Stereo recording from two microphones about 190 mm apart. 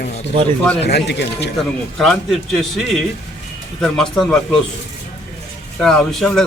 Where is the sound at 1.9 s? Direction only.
5° left (ahead or behind).